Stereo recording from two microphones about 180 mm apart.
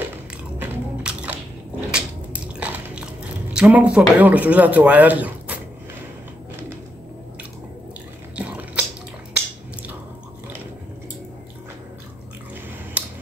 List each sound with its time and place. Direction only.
0.6 s biting: 10° right (ahead or behind)
3.5 s speech: 5° right (ahead or behind)
8.4 s drip: 10° right (ahead or behind)
13.0 s a sound: 10° right (ahead or behind)